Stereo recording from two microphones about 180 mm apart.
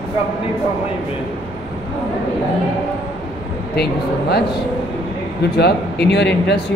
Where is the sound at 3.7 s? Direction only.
65° left (ahead or behind).